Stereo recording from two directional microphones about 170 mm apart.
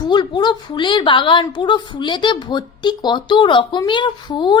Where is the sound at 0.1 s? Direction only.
25° left (ahead or behind).